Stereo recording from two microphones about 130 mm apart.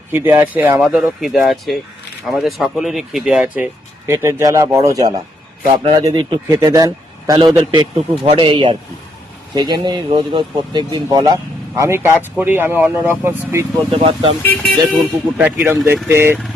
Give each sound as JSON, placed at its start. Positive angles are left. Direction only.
{"t": 0.1, "sound": "speech", "side_deg": -20}
{"t": 3.4, "sound": "a man's voice", "side_deg": -15}
{"t": 11.3, "sound": "speech", "side_deg": -25}
{"t": 13.9, "sound": "speech", "side_deg": -45}
{"t": 14.7, "sound": "speech", "side_deg": -5}